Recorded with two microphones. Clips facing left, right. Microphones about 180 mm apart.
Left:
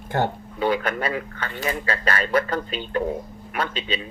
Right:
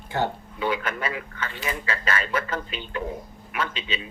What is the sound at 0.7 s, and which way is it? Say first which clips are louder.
Speech: left 4 dB; 35° left (ahead or behind).